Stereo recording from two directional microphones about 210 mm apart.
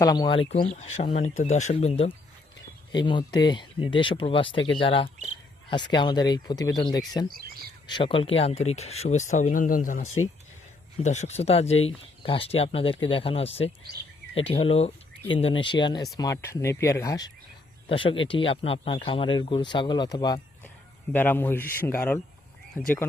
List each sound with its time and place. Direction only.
0.0 s speech: 20° left (ahead or behind)
0.6 s speech: 35° left (ahead or behind); by 7.3 s 20° left (ahead or behind)
7.3 s speech: 45° right (ahead or behind)
7.9 s speech: 25° left (ahead or behind)
21.1 s speech: 10° left (ahead or behind)